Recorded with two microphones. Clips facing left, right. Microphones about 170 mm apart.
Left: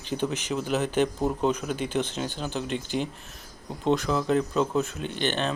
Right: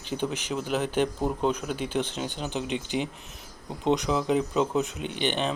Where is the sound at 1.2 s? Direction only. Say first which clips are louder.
Left 1 dB; 5° left (ahead or behind).